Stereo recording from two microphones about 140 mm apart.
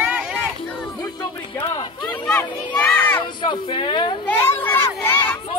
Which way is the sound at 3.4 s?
35° left (ahead or behind).